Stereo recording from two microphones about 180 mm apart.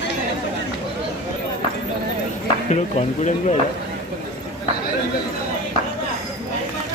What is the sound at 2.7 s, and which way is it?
Speech, 40° left (ahead or behind).